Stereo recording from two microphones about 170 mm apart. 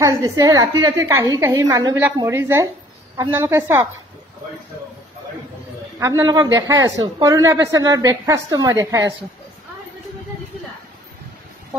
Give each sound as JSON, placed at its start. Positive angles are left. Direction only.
{"t": 0.0, "sound": "a man's voice", "side_deg": -20}
{"t": 5.9, "sound": "a man's voice", "side_deg": -20}